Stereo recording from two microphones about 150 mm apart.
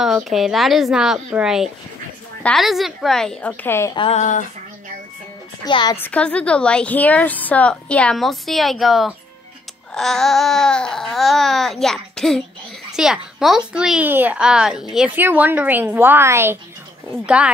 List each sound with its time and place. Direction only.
0.0 s speech: centre (ahead or behind)
3.6 s a woman's voice: 15° left (ahead or behind)
4.1 s speech: 55° left (ahead or behind)
5.7 s a woman's voice: 30° left (ahead or behind)
5.9 s a woman's voice: 10° left (ahead or behind); by 17.4 s 10° right (ahead or behind)